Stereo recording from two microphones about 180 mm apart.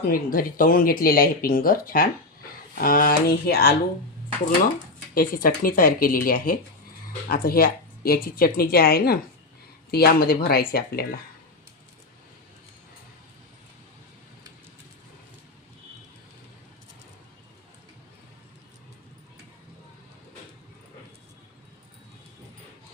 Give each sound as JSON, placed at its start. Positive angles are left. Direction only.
{"t": 0.1, "sound": "speech", "side_deg": 50}
{"t": 5.1, "sound": "speech", "side_deg": 50}